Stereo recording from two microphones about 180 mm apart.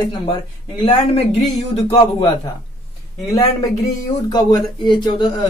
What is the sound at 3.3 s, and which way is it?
Speech, 20° left (ahead or behind).